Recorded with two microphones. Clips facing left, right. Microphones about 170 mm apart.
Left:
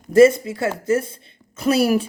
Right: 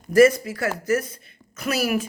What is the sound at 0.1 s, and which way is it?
A woman's voice, 25° left (ahead or behind).